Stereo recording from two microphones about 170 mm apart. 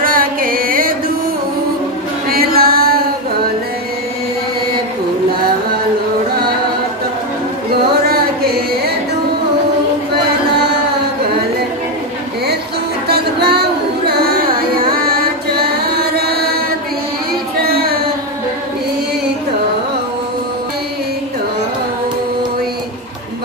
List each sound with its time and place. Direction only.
0.0 s music: 55° right (ahead or behind)
2.2 s music: 65° right (ahead or behind)
13.1 s singing: 70° right (ahead or behind)